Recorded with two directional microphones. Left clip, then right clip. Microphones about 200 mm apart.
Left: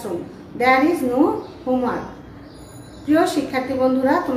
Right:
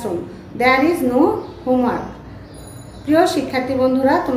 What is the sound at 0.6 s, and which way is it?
Speech, 25° right (ahead or behind).